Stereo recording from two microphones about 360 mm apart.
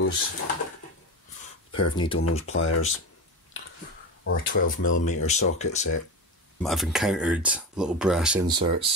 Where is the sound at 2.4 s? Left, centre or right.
Left.